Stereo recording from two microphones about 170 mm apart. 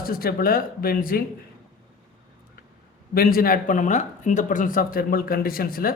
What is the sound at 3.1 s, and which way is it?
Speech, 60° left (ahead or behind).